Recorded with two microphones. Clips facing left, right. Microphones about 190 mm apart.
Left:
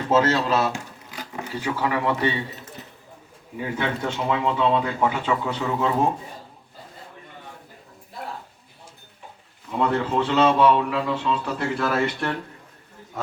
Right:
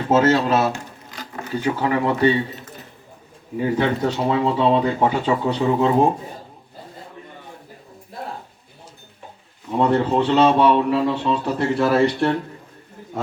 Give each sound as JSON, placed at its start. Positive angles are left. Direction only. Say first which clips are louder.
{"t": 0.1, "sound": "speech", "louder": "right 4 dB", "side_deg": -30}
{"t": 0.7, "sound": "a sound", "louder": "right 2 dB", "side_deg": 15}
{"t": 1.6, "sound": "a man's voice", "louder": "right 4 dB", "side_deg": -30}
{"t": 3.6, "sound": "a man's voice", "louder": "right 7 dB", "side_deg": -35}
{"t": 9.6, "sound": "a man's voice", "louder": "right 5 dB", "side_deg": -30}